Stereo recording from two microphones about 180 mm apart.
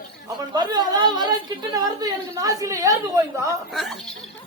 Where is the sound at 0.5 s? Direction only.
25° right (ahead or behind).